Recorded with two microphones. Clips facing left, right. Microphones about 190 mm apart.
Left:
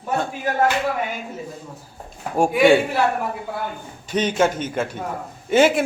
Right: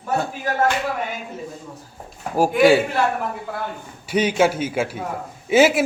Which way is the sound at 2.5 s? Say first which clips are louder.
Even; centre (ahead or behind).